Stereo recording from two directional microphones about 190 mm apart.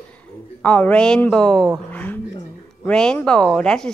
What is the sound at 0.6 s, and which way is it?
A woman's voice, 5° left (ahead or behind).